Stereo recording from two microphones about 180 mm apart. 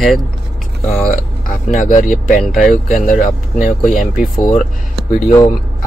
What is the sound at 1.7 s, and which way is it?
Speech, 45° left (ahead or behind).